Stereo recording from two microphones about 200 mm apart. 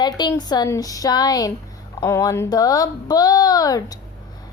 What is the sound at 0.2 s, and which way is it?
A woman's voice, 20° left (ahead or behind).